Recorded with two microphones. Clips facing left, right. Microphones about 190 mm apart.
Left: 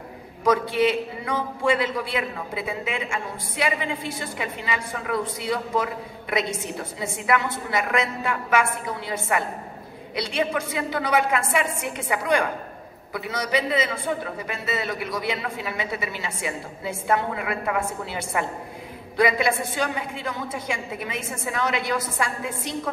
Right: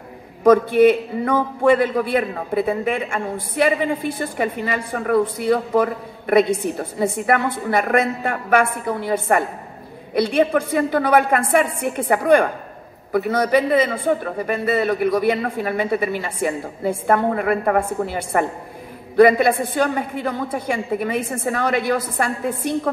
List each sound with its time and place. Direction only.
0.4 s a man's voice: 55° right (ahead or behind)